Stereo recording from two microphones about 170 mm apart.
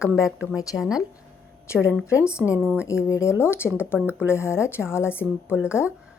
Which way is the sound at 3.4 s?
15° left (ahead or behind).